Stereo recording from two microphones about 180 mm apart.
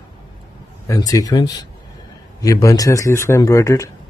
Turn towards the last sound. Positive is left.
turn(degrees=15)  # may be behind; listen again after turning